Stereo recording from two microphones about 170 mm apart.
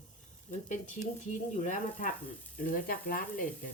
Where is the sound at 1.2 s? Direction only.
45° left (ahead or behind).